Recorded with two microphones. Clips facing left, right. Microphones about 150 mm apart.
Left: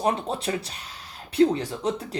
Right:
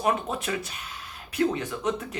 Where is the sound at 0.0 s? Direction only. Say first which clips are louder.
Left 1 dB; 30° left (ahead or behind).